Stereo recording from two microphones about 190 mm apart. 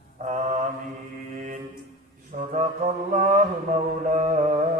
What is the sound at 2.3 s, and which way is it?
Music, 40° right (ahead or behind).